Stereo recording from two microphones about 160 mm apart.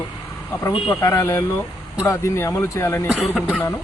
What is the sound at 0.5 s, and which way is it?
Speech, 15° left (ahead or behind).